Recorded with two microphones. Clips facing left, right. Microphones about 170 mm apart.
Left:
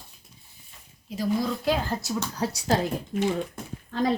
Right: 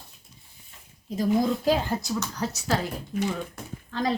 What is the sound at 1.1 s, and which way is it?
Speech, 45° right (ahead or behind).